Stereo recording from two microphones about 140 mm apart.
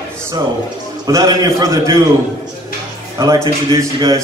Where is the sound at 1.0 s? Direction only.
25° right (ahead or behind).